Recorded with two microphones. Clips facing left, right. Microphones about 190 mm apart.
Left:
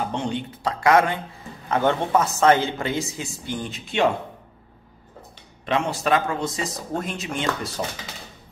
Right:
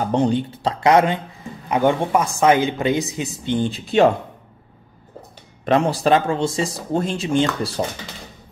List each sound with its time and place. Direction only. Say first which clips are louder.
0.1 s a woman's voice: right 8 dB; 35° right (ahead or behind)
5.7 s speech: right 6 dB; 35° right (ahead or behind)